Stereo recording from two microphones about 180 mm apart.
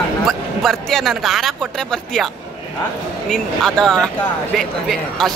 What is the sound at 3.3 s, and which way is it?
Speech, 5° left (ahead or behind).